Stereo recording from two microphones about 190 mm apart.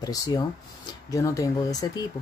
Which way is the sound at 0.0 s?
20° left (ahead or behind).